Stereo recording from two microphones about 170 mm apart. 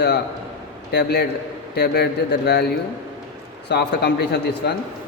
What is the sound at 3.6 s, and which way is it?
Speech, 70° left (ahead or behind).